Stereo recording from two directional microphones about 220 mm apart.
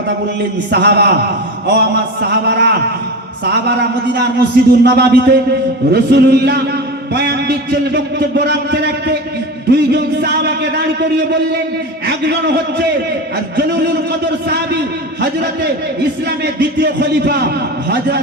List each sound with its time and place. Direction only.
0.7 s a man's voice: 50° right (ahead or behind)
2.2 s a man's voice: 45° right (ahead or behind)
12.0 s a man's voice: 45° right (ahead or behind)